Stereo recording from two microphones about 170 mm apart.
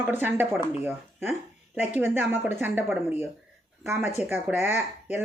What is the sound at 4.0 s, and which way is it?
Speech, 40° left (ahead or behind).